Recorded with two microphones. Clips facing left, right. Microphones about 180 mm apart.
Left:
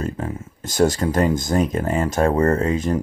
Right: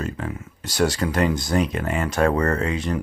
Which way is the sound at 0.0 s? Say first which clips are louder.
Left 2 dB; 30° left (ahead or behind).